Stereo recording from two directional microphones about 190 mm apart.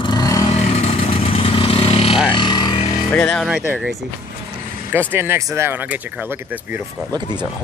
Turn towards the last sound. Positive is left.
turn(degrees=-10)  # may be behind; listen again after turning